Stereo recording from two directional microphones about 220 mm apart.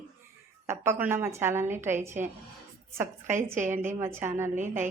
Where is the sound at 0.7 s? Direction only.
10° right (ahead or behind).